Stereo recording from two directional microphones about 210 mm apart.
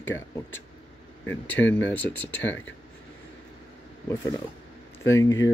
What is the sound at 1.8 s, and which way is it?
Speech, 10° left (ahead or behind).